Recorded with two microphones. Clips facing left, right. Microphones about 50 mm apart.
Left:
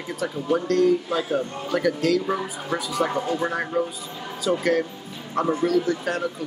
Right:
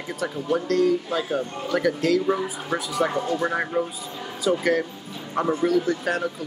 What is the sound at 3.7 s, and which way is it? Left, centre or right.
Speech, right.